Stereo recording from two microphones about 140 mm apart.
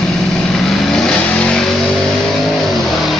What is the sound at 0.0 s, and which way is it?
Vehicle, 5° left (ahead or behind).